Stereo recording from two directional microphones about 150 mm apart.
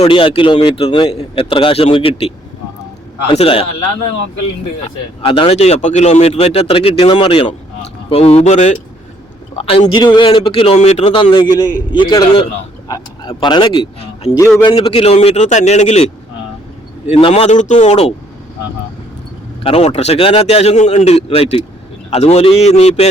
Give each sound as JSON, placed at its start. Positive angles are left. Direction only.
{"t": 0.0, "sound": "a man's voice", "side_deg": 35}
{"t": 5.2, "sound": "a man's voice", "side_deg": 35}
{"t": 14.3, "sound": "speech", "side_deg": 50}
{"t": 14.6, "sound": "a man's voice", "side_deg": 30}
{"t": 14.8, "sound": "speech", "side_deg": 40}
{"t": 17.1, "sound": "speech", "side_deg": 40}
{"t": 19.6, "sound": "speech", "side_deg": 45}